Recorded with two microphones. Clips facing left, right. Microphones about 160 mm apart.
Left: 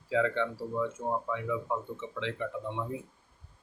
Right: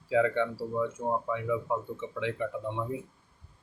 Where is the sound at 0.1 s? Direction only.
10° right (ahead or behind).